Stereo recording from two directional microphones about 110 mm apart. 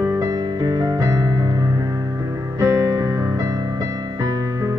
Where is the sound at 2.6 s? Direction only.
30° right (ahead or behind).